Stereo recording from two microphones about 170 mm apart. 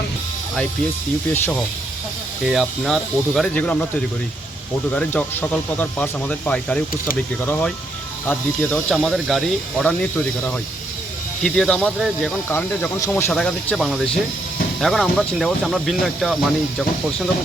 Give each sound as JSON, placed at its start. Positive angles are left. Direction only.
{"t": 2.4, "sound": "speech", "side_deg": 0}
{"t": 11.4, "sound": "speech", "side_deg": 5}
{"t": 12.5, "sound": "speech", "side_deg": 15}